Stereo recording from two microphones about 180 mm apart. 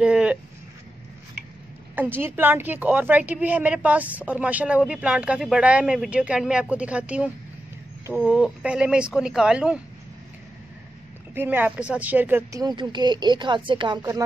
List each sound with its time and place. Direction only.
0.0 s a sound: 5° right (ahead or behind)
2.0 s a woman's voice: 10° right (ahead or behind)
11.3 s a woman's voice: 10° right (ahead or behind)